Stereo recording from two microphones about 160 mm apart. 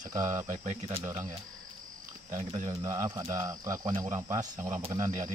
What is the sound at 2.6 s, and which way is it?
Speech, 20° right (ahead or behind).